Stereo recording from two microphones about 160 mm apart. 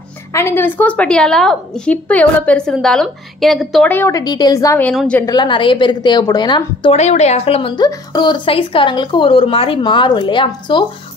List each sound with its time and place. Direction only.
0.3 s a woman's voice: 15° left (ahead or behind)
3.9 s a woman's voice: 15° left (ahead or behind)
4.2 s a woman's voice: 25° left (ahead or behind)
4.8 s a woman's voice: 5° left (ahead or behind)
5.2 s a woman's voice: 25° left (ahead or behind)
6.9 s a woman's voice: 45° left (ahead or behind)